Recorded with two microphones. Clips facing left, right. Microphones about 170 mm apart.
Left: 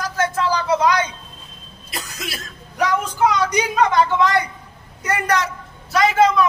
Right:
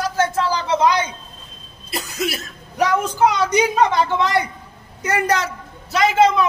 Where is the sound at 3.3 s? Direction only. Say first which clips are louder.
Right 2 dB; 30° right (ahead or behind).